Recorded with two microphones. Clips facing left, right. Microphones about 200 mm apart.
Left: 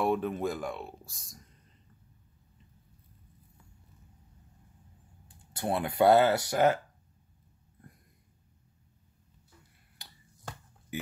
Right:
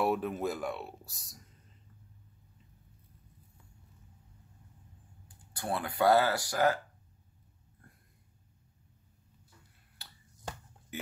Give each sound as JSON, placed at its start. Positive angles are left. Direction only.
{"t": 0.0, "sound": "speech", "side_deg": -5}
{"t": 5.5, "sound": "speech", "side_deg": 25}
{"t": 10.0, "sound": "finger snapping", "side_deg": 15}
{"t": 10.9, "sound": "speech", "side_deg": 10}